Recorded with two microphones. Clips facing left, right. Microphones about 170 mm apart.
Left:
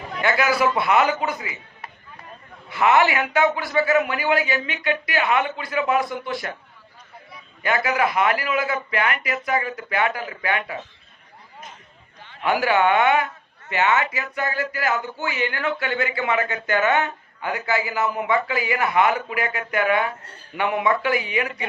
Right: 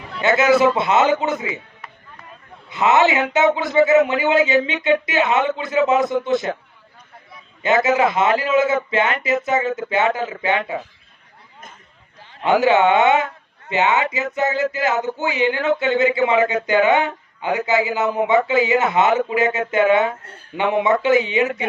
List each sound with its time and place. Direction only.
0.2 s a man's voice: 20° right (ahead or behind)
2.6 s a man's voice: 20° right (ahead or behind)
7.9 s a man's voice: 25° right (ahead or behind)
12.3 s a man's voice: 25° right (ahead or behind)